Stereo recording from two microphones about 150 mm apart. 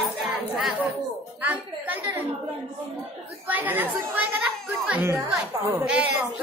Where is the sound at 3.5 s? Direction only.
10° right (ahead or behind).